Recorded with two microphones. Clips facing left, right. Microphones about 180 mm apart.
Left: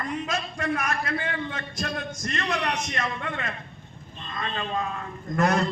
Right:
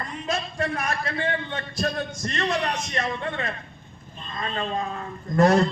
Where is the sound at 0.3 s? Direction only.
30° right (ahead or behind).